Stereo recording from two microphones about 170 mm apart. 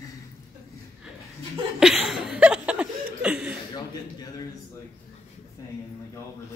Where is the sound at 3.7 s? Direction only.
25° left (ahead or behind).